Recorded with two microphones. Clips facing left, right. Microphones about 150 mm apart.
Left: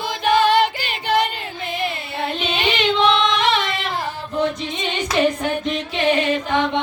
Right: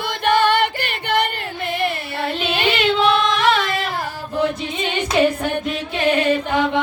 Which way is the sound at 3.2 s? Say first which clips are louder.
Right 1 dB; 45° right (ahead or behind).